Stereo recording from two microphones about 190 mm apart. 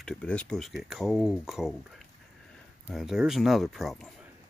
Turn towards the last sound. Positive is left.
turn(degrees=0)  # may be behind; listen again after turning